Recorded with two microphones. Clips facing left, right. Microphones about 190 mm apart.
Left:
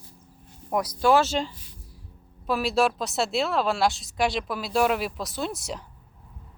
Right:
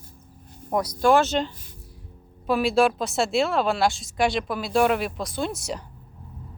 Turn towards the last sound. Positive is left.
turn(degrees=0)  # may be behind; listen again after turning